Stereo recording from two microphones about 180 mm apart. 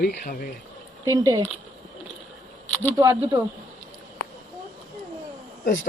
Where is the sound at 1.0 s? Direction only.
20° right (ahead or behind).